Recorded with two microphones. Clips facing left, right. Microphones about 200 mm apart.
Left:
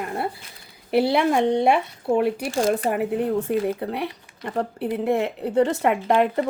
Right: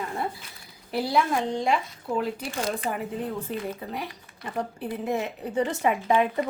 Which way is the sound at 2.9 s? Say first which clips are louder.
Left 8 dB; 70° left (ahead or behind).